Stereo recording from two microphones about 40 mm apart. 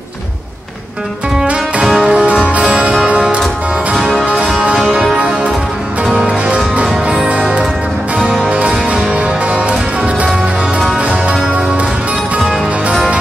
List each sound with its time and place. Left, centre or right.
1.8 s music: centre
2.0 s music: right
5.1 s music: right
8.2 s music: right